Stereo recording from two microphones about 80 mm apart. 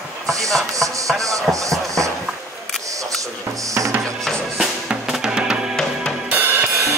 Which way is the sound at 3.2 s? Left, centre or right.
Right.